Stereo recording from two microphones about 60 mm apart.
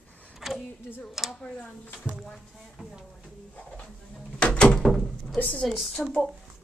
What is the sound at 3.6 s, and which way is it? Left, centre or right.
Door, centre.